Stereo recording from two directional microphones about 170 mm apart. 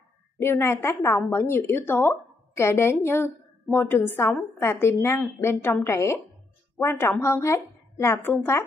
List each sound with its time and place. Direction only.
0.4 s a woman's voice: 15° left (ahead or behind)